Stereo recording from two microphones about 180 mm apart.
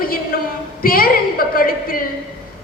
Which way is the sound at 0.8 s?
55° left (ahead or behind).